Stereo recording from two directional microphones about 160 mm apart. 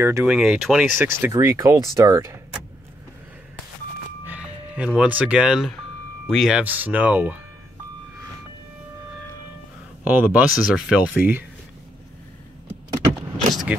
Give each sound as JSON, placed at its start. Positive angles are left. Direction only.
{"t": 0.0, "sound": "speech", "side_deg": -15}
{"t": 0.3, "sound": "speech", "side_deg": -5}
{"t": 4.3, "sound": "speech", "side_deg": -5}
{"t": 10.0, "sound": "speech", "side_deg": -10}
{"t": 13.5, "sound": "vehicle", "side_deg": 0}